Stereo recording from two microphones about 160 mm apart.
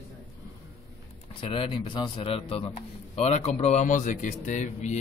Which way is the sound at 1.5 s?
30° left (ahead or behind).